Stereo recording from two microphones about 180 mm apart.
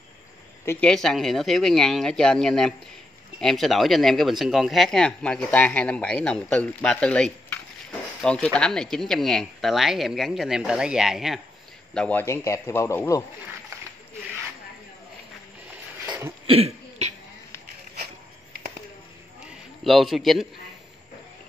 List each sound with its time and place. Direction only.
0.7 s a man's voice: 5° left (ahead or behind)
16.1 s throat clearing: 15° right (ahead or behind)
16.4 s cough: 35° right (ahead or behind)
19.8 s speech: centre (ahead or behind)